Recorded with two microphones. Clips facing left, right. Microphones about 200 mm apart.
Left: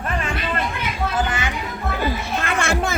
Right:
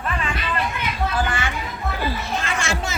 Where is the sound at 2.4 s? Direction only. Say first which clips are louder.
Left 3 dB; 60° left (ahead or behind).